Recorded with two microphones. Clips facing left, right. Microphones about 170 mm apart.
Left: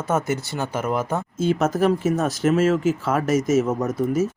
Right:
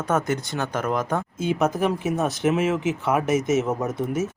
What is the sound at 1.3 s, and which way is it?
Speech, 15° right (ahead or behind).